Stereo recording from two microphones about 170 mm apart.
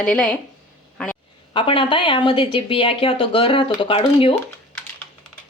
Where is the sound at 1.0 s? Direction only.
5° left (ahead or behind).